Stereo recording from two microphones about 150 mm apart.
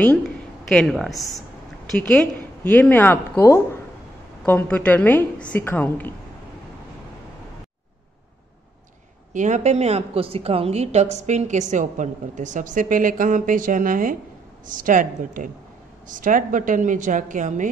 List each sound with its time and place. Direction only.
0.7 s a woman's voice: centre (ahead or behind)
9.3 s a woman's voice: 55° right (ahead or behind)